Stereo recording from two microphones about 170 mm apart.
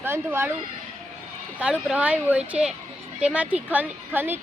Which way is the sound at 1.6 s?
5° right (ahead or behind).